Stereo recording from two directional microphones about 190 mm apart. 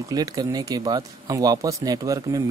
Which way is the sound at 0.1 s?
20° right (ahead or behind).